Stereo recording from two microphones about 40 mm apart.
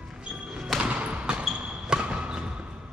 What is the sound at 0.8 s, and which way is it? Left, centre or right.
Basketball bounce, right.